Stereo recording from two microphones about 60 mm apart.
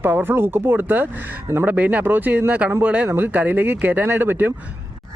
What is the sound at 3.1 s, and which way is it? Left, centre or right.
Speech, right.